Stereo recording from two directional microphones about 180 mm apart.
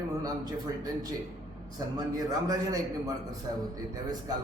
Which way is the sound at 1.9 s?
20° right (ahead or behind).